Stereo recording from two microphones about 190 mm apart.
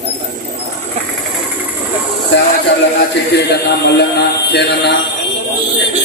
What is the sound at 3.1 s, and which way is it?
A man's voice, 65° left (ahead or behind).